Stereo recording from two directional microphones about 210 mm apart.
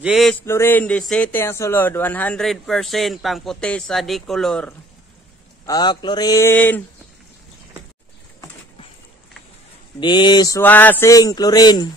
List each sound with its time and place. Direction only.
0.0 s a man's voice: centre (ahead or behind)
5.7 s speech: 20° left (ahead or behind)
9.9 s speech: 20° left (ahead or behind)